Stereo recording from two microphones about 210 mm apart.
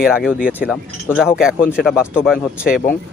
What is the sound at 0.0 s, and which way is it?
Speech, 5° right (ahead or behind).